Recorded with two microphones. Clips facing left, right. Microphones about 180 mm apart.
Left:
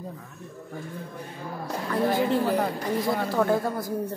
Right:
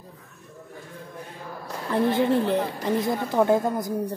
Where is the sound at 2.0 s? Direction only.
25° right (ahead or behind).